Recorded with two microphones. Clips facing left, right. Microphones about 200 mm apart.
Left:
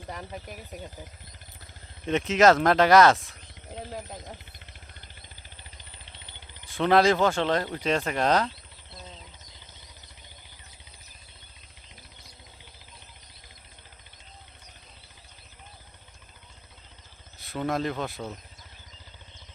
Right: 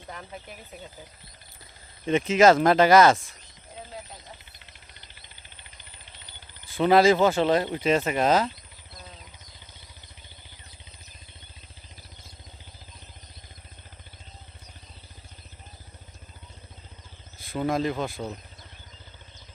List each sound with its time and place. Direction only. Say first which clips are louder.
0.4 s speech: left 3 dB; 40° left (ahead or behind)
2.0 s speech: right 2 dB; centre (ahead or behind)
3.8 s a sound: left 4 dB; 50° left (ahead or behind)
6.7 s speech: right 2 dB; centre (ahead or behind)
17.4 s speech: right 2 dB; centre (ahead or behind)